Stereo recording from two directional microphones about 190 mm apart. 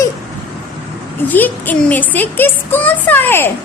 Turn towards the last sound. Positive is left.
turn(degrees=10)  # may be behind; listen again after turning